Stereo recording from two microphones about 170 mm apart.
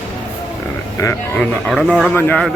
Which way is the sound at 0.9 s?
15° left (ahead or behind).